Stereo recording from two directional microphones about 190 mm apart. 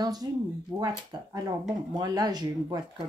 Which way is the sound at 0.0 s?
20° right (ahead or behind).